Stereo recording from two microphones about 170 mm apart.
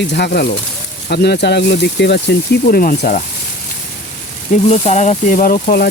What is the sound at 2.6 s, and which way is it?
Speech, 55° left (ahead or behind).